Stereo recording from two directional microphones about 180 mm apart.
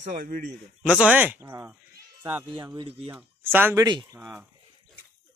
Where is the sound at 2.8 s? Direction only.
30° right (ahead or behind).